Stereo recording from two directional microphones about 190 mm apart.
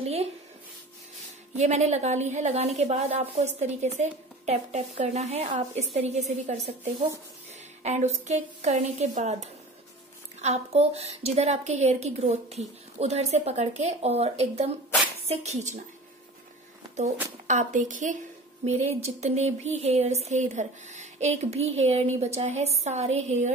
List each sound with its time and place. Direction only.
0.0 s a sound: 35° right (ahead or behind)
1.6 s a woman's voice: 35° right (ahead or behind)
7.8 s a woman's voice: 35° right (ahead or behind)
17.5 s a woman's voice: 40° right (ahead or behind)